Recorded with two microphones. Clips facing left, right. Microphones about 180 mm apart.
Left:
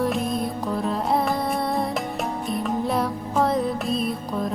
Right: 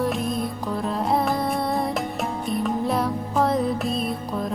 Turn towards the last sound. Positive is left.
turn(degrees=0)  # may be behind; listen again after turning